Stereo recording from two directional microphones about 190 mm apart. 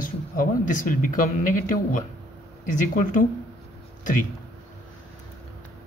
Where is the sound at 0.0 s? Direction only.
45° left (ahead or behind).